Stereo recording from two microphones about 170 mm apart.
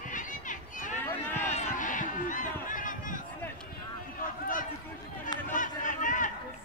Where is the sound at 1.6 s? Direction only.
50° left (ahead or behind).